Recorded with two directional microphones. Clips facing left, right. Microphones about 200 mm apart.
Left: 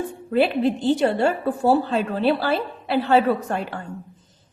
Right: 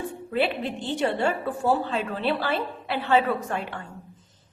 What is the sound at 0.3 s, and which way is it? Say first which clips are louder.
A woman's voice: left 7 dB; 40° left (ahead or behind).